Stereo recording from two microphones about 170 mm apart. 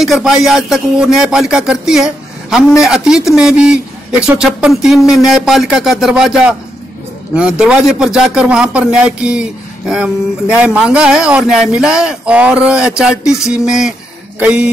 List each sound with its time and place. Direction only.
0.0 s speech: centre (ahead or behind)